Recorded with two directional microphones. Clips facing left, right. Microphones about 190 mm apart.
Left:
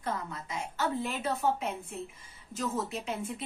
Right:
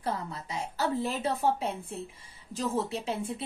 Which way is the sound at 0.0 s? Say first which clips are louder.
Right 2 dB; 35° right (ahead or behind).